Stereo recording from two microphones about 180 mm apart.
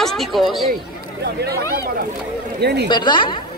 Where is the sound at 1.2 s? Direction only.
65° right (ahead or behind).